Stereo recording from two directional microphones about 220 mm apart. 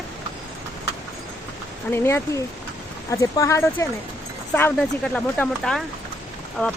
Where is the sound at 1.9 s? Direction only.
10° left (ahead or behind).